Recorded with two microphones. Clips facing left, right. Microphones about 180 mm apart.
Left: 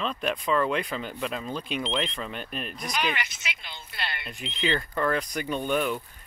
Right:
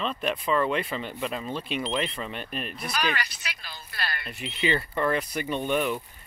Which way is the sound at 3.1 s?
20° left (ahead or behind).